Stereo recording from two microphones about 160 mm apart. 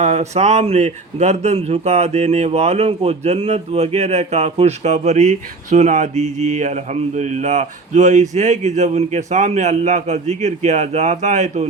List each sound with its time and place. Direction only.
0.0 s speech: 45° right (ahead or behind)